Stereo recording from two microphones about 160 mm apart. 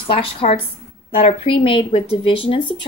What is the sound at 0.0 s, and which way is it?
A woman's voice, 35° left (ahead or behind).